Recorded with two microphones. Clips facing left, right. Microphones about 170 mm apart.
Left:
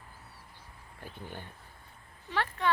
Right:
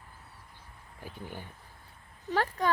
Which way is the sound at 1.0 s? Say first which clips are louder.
Right 1 dB; 10° right (ahead or behind).